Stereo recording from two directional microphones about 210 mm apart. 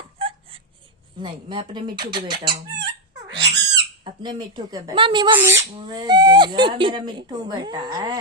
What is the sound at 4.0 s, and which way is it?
Speech, 25° right (ahead or behind).